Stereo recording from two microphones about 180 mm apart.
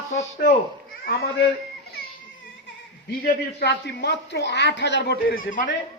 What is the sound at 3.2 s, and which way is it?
A man's voice, 65° left (ahead or behind).